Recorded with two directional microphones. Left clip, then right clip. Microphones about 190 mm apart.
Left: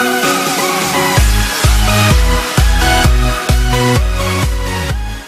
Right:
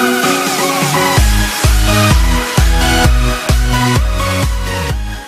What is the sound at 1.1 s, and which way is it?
Music, centre (ahead or behind).